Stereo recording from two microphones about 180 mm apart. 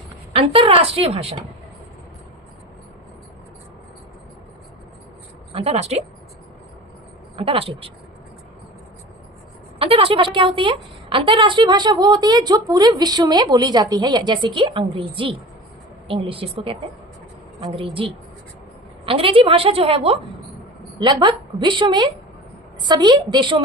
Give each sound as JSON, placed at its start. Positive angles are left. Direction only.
{"t": 0.3, "sound": "a woman's voice", "side_deg": -30}
{"t": 5.5, "sound": "a woman's voice", "side_deg": -35}
{"t": 7.3, "sound": "a woman's voice", "side_deg": -30}
{"t": 9.7, "sound": "a woman's voice", "side_deg": -30}